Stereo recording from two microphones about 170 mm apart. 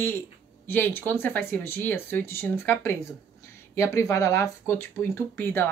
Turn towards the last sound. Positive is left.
turn(degrees=10)  # may be behind; listen again after turning